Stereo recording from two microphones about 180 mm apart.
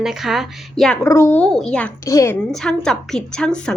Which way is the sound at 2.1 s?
15° left (ahead or behind).